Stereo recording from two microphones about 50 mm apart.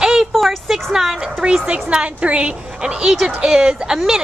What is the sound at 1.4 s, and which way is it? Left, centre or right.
A woman's voice, right.